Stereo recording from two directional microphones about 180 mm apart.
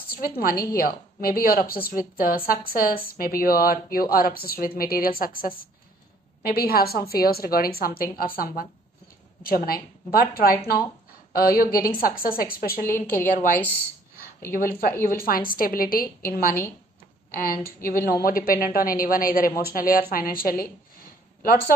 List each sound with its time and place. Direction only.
0.1 s a woman's voice: 55° left (ahead or behind)
12.8 s a woman's voice: 15° left (ahead or behind)
14.5 s a woman's voice: 55° left (ahead or behind)